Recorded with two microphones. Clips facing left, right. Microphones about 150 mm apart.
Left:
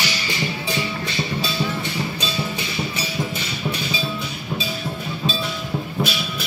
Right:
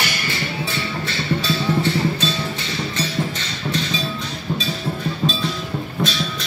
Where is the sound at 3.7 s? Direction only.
10° left (ahead or behind).